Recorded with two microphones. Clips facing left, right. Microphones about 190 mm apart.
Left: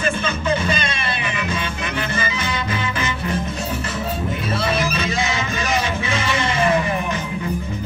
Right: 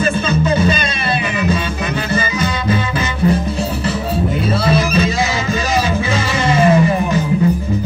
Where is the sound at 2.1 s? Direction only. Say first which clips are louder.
Right 6 dB; 35° right (ahead or behind).